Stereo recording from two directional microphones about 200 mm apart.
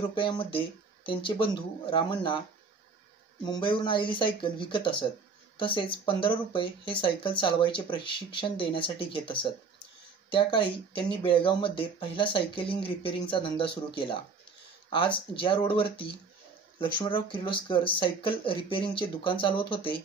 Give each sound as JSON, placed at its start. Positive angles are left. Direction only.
{"t": 0.1, "sound": "speech", "side_deg": 25}
{"t": 3.4, "sound": "speech", "side_deg": 20}